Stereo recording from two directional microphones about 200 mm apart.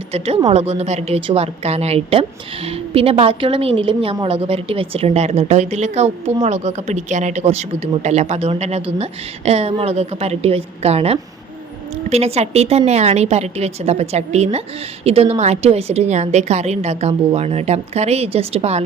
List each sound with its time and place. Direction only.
0.1 s a woman's voice: 25° right (ahead or behind)